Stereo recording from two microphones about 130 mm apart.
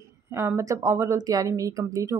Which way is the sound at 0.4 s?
20° right (ahead or behind).